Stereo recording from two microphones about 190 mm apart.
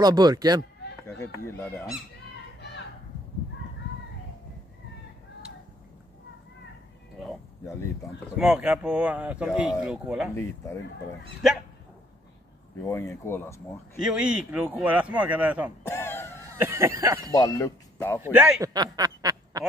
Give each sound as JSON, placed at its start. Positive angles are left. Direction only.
{"t": 0.0, "sound": "speech", "side_deg": -20}
{"t": 1.0, "sound": "speech", "side_deg": 15}
{"t": 8.4, "sound": "speech", "side_deg": -5}
{"t": 12.8, "sound": "speech", "side_deg": 15}
{"t": 14.0, "sound": "speech", "side_deg": -5}
{"t": 15.8, "sound": "speech", "side_deg": 10}
{"t": 16.5, "sound": "speech", "side_deg": -10}
{"t": 17.3, "sound": "speech", "side_deg": 20}
{"t": 18.2, "sound": "speech", "side_deg": -5}
{"t": 18.6, "sound": "a sound", "side_deg": -20}